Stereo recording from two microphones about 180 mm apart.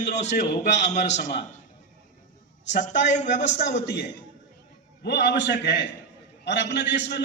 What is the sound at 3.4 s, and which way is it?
A man's voice, 70° left (ahead or behind).